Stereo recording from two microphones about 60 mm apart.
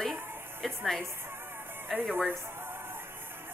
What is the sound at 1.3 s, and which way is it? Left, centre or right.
Music, right.